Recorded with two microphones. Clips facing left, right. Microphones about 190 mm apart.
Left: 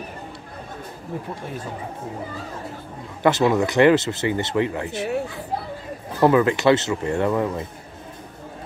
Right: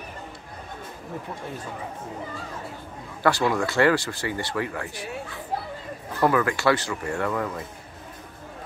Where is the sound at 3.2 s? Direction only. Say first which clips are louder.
Left 4 dB; 20° left (ahead or behind).